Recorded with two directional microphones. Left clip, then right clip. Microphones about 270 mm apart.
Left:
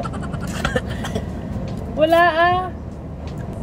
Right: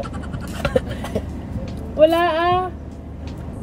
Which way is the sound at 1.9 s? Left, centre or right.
Centre.